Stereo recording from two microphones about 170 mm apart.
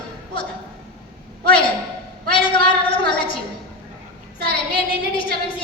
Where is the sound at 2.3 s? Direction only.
30° left (ahead or behind).